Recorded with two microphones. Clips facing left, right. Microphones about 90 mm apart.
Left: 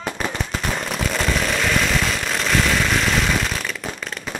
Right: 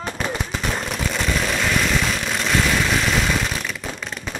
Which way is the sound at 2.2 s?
Centre (ahead or behind).